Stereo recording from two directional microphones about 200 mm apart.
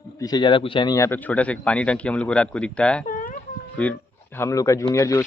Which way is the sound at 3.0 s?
40° left (ahead or behind).